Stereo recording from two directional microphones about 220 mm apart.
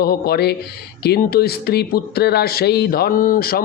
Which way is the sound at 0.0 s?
45° left (ahead or behind).